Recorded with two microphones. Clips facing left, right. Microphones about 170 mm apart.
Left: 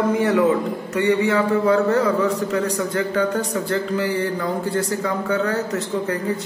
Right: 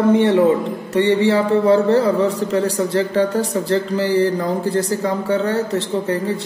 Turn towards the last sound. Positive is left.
turn(degrees=-30)  # may be behind; listen again after turning